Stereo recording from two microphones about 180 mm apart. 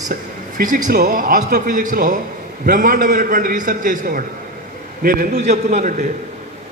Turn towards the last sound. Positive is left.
turn(degrees=-40)  # may be behind; listen again after turning